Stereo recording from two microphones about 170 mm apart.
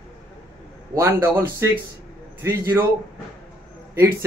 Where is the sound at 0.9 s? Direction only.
15° right (ahead or behind).